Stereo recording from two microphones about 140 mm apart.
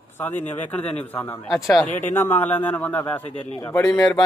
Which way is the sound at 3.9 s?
25° left (ahead or behind).